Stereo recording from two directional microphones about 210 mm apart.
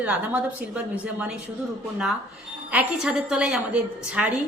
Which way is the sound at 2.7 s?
5° right (ahead or behind).